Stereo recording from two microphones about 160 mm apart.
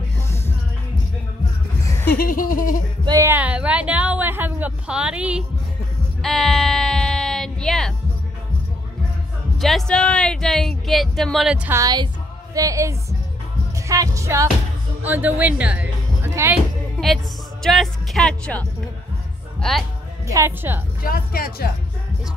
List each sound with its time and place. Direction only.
2.0 s a sound: 65° left (ahead or behind)
3.1 s a woman's voice: 15° right (ahead or behind)
6.2 s a sound: centre (ahead or behind)
9.6 s speech: centre (ahead or behind)
11.8 s music: 25° right (ahead or behind)
15.0 s a woman's voice: 10° right (ahead or behind)
17.6 s speech: centre (ahead or behind)
20.2 s a woman's voice: 15° right (ahead or behind)
21.0 s speech: 65° left (ahead or behind)